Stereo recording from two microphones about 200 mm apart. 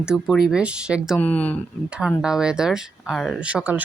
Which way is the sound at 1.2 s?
5° left (ahead or behind).